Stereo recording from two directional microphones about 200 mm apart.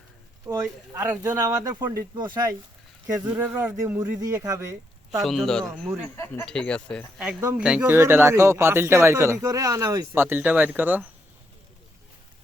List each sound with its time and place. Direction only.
0.4 s speech: 10° right (ahead or behind)
5.2 s speech: centre (ahead or behind)
6.1 s speech: 15° left (ahead or behind); by 11.0 s 10° right (ahead or behind)